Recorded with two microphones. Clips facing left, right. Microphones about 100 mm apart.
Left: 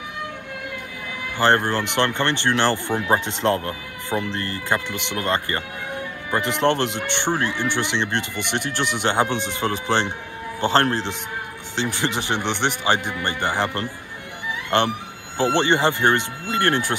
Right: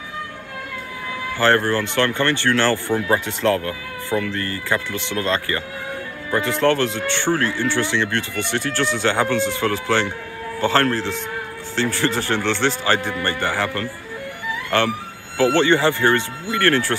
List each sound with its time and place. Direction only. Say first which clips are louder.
1.4 s speech: right 1 dB; 20° left (ahead or behind)